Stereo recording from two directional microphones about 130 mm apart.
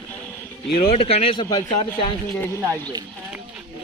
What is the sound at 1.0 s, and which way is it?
Speech, 50° left (ahead or behind).